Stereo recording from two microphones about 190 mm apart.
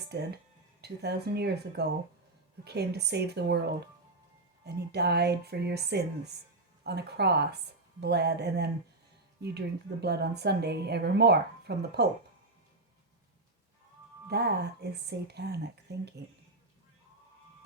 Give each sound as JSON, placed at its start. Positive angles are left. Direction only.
{"t": 0.1, "sound": "a woman's voice", "side_deg": -60}
{"t": 14.3, "sound": "a woman's voice", "side_deg": -60}